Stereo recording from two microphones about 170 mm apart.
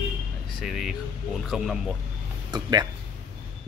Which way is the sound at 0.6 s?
Centre (ahead or behind).